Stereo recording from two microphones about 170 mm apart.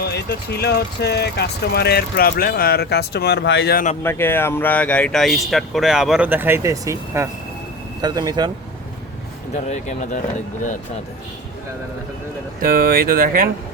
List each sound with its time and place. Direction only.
0.0 s speech: 75° left (ahead or behind)
4.0 s speech: 15° left (ahead or behind); by 8.5 s 25° right (ahead or behind)
9.6 s speech: 40° left (ahead or behind)
12.6 s speech: 60° right (ahead or behind)